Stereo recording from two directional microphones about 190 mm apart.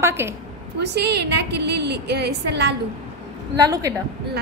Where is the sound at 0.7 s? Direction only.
60° right (ahead or behind).